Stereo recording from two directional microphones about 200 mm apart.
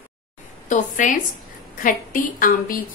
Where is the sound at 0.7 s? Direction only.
40° left (ahead or behind).